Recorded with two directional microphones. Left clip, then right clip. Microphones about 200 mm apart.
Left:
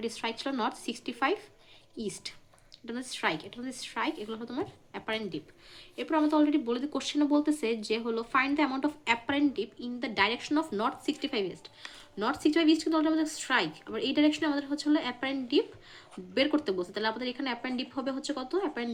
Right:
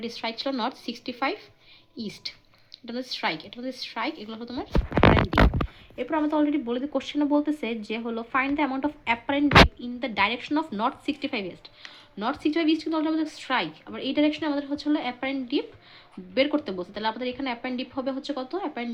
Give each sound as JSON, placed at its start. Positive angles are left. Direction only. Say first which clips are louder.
{"t": 0.0, "sound": "speech", "louder": "right 3 dB", "side_deg": -30}
{"t": 2.8, "sound": "speech", "louder": "right 3 dB", "side_deg": -30}
{"t": 6.0, "sound": "speech", "louder": "right 2 dB", "side_deg": -30}